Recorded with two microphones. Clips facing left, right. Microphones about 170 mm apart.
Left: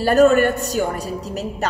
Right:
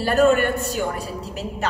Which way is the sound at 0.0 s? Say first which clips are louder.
Left 4 dB; 45° left (ahead or behind).